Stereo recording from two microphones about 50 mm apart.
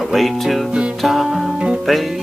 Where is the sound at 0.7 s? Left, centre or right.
Right.